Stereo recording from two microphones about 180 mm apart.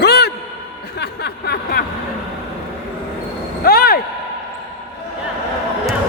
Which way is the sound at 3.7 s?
55° left (ahead or behind).